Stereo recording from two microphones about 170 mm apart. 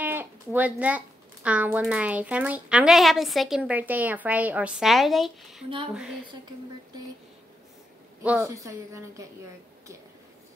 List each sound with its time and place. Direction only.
0.0 s speech: 10° right (ahead or behind)
8.2 s a woman's voice: 10° right (ahead or behind)
8.5 s speech: 20° right (ahead or behind)